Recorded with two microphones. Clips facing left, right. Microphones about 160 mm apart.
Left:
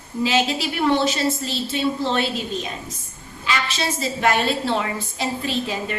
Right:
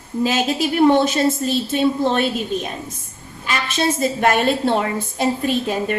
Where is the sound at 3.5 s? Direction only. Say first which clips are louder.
Right 4 dB; 55° right (ahead or behind).